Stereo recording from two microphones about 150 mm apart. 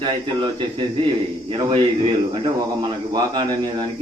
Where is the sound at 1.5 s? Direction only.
35° right (ahead or behind).